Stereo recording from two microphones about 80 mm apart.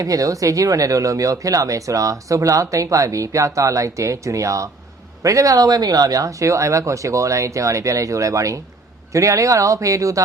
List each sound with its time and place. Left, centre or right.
0.0 s speech: right